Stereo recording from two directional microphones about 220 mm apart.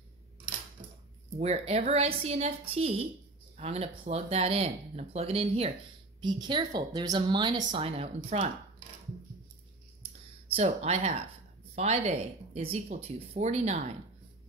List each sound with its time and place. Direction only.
1.3 s a woman's voice: 30° right (ahead or behind)
10.5 s a woman's voice: 30° right (ahead or behind)